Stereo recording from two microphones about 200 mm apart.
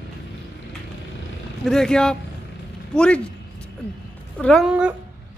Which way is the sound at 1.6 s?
5° left (ahead or behind).